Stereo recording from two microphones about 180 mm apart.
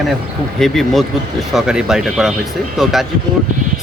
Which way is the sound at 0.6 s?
Centre (ahead or behind).